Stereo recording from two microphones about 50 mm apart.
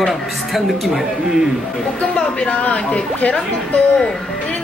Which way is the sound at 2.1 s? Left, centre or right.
Left.